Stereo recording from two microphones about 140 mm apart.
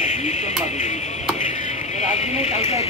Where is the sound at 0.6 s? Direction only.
55° left (ahead or behind).